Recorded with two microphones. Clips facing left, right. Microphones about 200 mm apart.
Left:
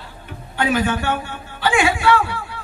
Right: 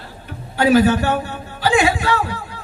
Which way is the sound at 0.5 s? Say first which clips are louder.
Right 6 dB; 40° right (ahead or behind).